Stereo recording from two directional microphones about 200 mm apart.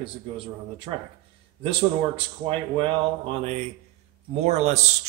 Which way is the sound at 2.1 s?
30° right (ahead or behind).